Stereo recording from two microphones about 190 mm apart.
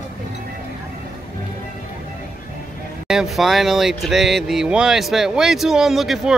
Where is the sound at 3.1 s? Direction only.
Centre (ahead or behind).